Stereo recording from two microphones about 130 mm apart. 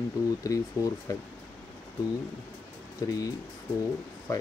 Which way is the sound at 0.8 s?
15° right (ahead or behind).